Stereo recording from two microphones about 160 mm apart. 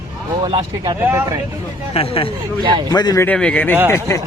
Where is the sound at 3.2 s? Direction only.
5° left (ahead or behind).